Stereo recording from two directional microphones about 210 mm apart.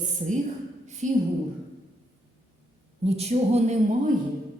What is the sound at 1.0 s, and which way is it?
Speech, 35° right (ahead or behind).